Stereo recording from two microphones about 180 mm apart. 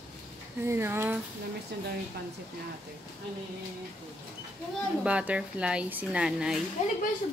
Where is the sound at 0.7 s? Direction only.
15° right (ahead or behind).